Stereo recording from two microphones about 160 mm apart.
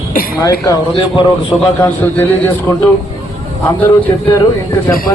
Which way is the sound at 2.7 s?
20° left (ahead or behind).